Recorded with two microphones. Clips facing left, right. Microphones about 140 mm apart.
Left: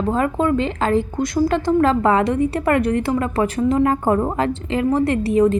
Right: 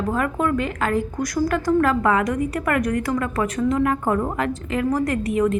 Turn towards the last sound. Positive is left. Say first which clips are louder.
# left 4 dB
turn(degrees=30)  # may be behind; listen again after turning